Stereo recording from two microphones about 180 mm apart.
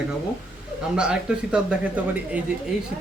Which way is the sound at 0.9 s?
5° right (ahead or behind).